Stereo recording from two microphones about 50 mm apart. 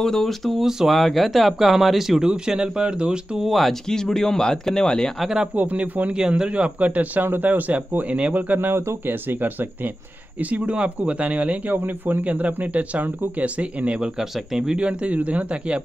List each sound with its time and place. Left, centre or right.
0.0 s speech: centre
0.7 s speech: centre
0.9 s speech: centre
3.4 s speech: centre
5.2 s speech: centre
5.6 s speech: right
6.1 s speech: centre; by 9.7 s right
10.4 s speech: right
11.7 s speech: right
14.1 s speech: centre